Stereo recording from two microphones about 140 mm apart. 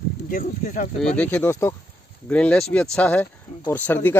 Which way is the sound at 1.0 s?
10° left (ahead or behind).